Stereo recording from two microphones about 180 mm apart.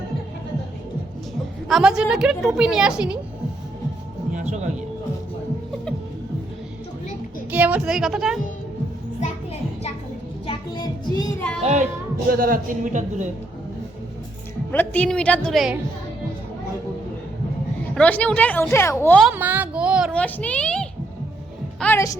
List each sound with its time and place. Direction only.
1.6 s a woman's voice: centre (ahead or behind)
4.3 s music: 40° right (ahead or behind)
7.5 s a woman's voice: 10° right (ahead or behind)
9.2 s music: 35° left (ahead or behind)
10.4 s child singing: 25° left (ahead or behind)
11.6 s a child's voice: 40° right (ahead or behind)
12.3 s speech: 55° right (ahead or behind)
14.7 s a woman's voice: 10° left (ahead or behind)
17.9 s a woman's voice: 5° left (ahead or behind)
19.2 s a sound: 10° right (ahead or behind)
20.1 s a woman's voice: 5° left (ahead or behind)